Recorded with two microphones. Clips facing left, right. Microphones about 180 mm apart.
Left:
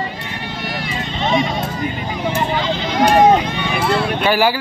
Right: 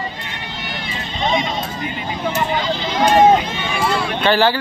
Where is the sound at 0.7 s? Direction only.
20° right (ahead or behind).